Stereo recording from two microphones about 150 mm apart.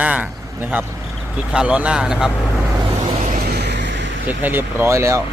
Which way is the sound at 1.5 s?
5° right (ahead or behind).